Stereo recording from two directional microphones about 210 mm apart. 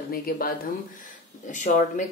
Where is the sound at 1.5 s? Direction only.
35° left (ahead or behind).